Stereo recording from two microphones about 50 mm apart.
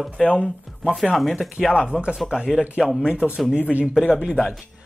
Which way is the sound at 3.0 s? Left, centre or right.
Centre.